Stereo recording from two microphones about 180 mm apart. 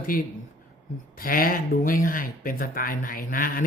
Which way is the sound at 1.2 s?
55° left (ahead or behind).